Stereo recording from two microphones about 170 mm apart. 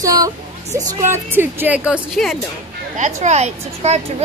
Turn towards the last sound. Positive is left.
turn(degrees=-40)  # may be behind; listen again after turning